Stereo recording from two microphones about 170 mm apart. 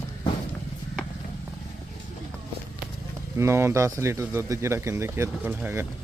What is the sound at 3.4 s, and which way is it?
Speech, 15° right (ahead or behind).